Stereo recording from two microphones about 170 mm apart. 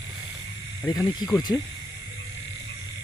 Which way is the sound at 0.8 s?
20° left (ahead or behind).